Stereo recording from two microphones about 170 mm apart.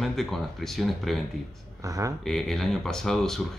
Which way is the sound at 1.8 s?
20° right (ahead or behind).